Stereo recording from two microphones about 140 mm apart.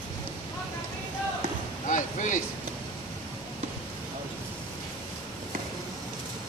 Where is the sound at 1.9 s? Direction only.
65° left (ahead or behind).